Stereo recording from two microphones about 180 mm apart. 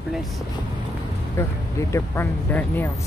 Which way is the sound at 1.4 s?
15° left (ahead or behind).